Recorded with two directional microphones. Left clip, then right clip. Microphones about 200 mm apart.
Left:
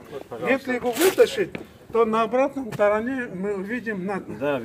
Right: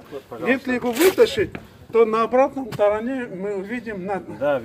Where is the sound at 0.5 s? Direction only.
40° right (ahead or behind).